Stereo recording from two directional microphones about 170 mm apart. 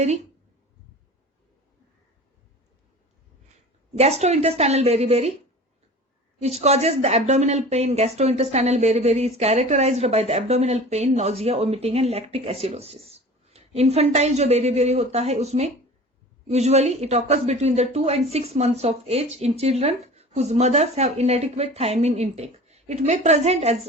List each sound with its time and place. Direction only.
3.9 s a woman's voice: 40° right (ahead or behind)
6.4 s a woman's voice: 40° right (ahead or behind)